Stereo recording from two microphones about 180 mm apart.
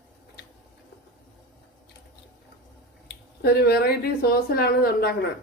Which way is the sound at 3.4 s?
60° left (ahead or behind).